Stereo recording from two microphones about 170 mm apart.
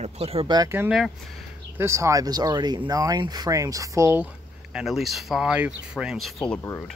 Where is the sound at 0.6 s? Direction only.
15° right (ahead or behind).